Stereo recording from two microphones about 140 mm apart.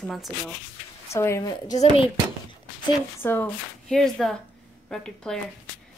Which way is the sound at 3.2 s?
15° left (ahead or behind).